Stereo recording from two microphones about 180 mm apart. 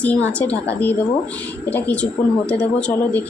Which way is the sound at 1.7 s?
10° left (ahead or behind).